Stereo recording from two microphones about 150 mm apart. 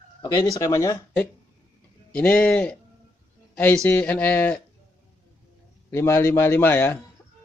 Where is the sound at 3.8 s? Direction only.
10° left (ahead or behind).